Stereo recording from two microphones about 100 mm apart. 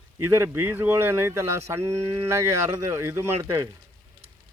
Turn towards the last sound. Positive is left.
turn(degrees=-30)  # may be behind; listen again after turning